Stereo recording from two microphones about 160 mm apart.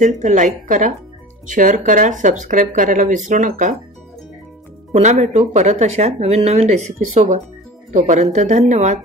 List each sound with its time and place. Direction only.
0.0 s speech: 50° right (ahead or behind)
4.9 s speech: 45° right (ahead or behind)